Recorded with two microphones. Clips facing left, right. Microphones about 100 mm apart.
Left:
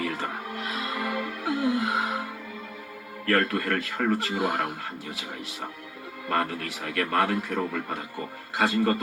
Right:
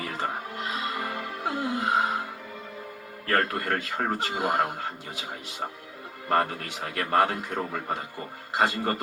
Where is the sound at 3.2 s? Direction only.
30° right (ahead or behind).